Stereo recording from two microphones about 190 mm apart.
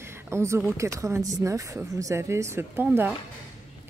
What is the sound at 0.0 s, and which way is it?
Speech, 15° right (ahead or behind).